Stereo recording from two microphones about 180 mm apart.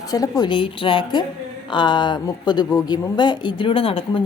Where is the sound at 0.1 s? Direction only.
20° left (ahead or behind).